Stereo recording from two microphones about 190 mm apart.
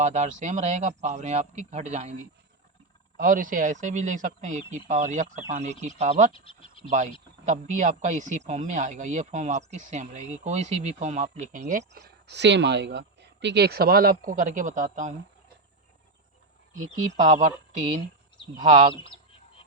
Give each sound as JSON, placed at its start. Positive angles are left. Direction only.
{"t": 0.0, "sound": "a man's voice", "side_deg": -40}
{"t": 3.2, "sound": "a man's voice", "side_deg": -45}
{"t": 6.3, "sound": "speech", "side_deg": 30}
{"t": 7.4, "sound": "a man's voice", "side_deg": -40}
{"t": 11.9, "sound": "speech", "side_deg": -60}
{"t": 17.2, "sound": "a man's voice", "side_deg": -40}
{"t": 18.6, "sound": "a man's voice", "side_deg": -40}